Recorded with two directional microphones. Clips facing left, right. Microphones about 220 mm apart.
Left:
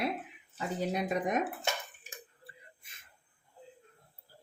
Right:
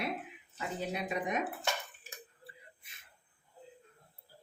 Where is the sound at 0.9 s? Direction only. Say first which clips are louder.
Left 4 dB; 40° left (ahead or behind).